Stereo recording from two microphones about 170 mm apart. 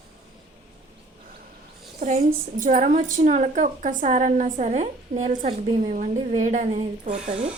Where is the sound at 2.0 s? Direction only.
40° right (ahead or behind).